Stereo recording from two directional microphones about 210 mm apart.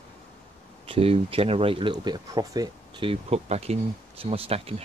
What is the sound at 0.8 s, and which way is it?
Speech, 25° right (ahead or behind).